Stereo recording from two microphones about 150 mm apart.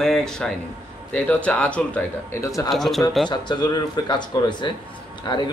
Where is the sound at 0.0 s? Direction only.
5° left (ahead or behind); by 2.7 s 20° left (ahead or behind).